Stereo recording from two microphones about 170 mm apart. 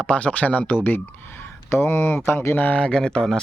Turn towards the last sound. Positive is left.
turn(degrees=5)  # may be behind; listen again after turning